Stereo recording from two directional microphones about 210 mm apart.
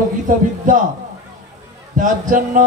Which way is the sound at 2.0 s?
40° right (ahead or behind).